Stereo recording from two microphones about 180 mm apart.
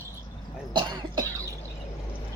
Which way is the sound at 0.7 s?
25° right (ahead or behind).